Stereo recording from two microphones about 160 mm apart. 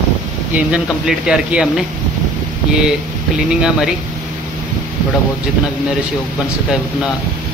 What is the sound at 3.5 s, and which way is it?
Speech, 5° right (ahead or behind).